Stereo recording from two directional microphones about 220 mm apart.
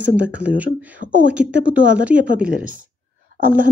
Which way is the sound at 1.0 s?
35° right (ahead or behind).